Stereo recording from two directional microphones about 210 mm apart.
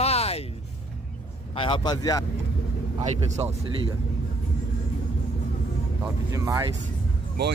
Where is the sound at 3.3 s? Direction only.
30° right (ahead or behind).